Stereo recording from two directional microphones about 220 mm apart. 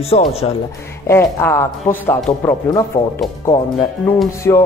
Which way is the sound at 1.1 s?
10° left (ahead or behind).